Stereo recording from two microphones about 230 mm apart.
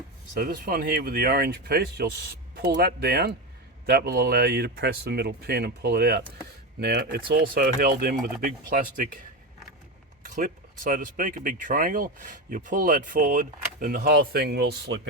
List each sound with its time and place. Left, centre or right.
0.3 s speech: right
10.2 s speech: right